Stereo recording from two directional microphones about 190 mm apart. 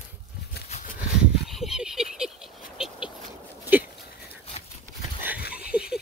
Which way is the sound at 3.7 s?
10° right (ahead or behind).